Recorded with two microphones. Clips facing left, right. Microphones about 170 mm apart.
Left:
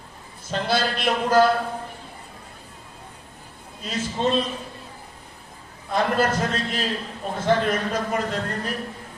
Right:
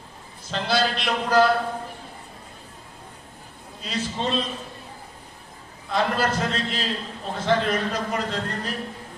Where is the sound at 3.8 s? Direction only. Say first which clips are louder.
Left 3 dB; 50° left (ahead or behind).